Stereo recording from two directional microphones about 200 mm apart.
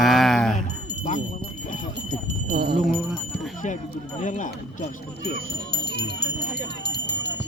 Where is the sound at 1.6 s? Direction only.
40° left (ahead or behind).